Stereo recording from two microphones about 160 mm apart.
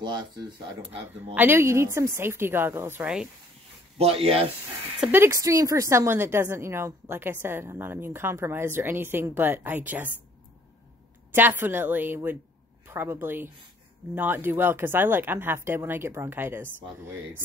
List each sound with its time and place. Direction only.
0.0 s speech: 25° right (ahead or behind)
1.3 s a woman's voice: 10° right (ahead or behind)
4.0 s speech: 40° right (ahead or behind)
5.0 s a woman's voice: 15° right (ahead or behind)
11.3 s a woman's voice: 10° right (ahead or behind)